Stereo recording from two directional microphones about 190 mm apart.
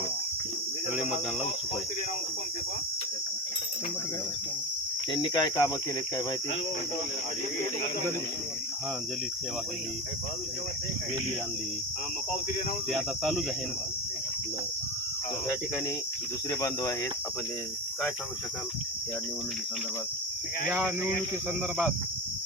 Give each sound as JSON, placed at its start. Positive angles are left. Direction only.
{"t": 5.1, "sound": "cricket", "side_deg": 25}
{"t": 12.9, "sound": "speech", "side_deg": 0}
{"t": 16.5, "sound": "cricket", "side_deg": 20}